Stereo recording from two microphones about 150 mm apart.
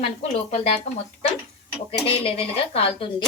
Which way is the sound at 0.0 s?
45° left (ahead or behind).